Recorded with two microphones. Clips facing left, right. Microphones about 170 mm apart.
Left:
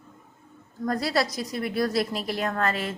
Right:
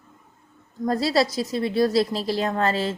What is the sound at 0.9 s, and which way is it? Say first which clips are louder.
A woman's voice: right 4 dB; 25° right (ahead or behind).